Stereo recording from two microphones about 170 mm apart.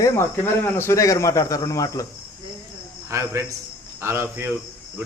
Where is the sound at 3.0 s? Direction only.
15° right (ahead or behind).